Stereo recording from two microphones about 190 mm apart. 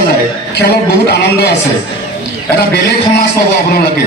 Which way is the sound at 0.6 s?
60° left (ahead or behind).